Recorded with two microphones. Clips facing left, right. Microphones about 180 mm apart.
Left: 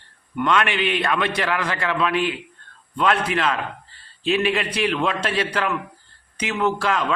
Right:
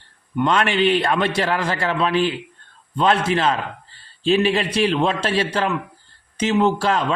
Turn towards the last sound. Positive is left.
turn(degrees=-30)  # may be behind; listen again after turning